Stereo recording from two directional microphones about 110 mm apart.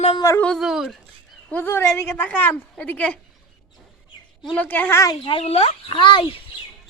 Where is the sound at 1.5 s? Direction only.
20° left (ahead or behind).